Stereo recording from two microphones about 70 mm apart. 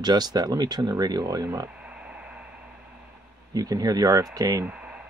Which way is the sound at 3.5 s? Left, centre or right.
Right.